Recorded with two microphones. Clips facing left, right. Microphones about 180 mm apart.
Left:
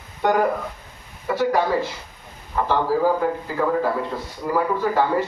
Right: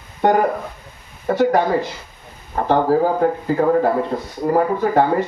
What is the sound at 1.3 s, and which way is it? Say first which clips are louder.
Speech: right 4 dB; 55° right (ahead or behind).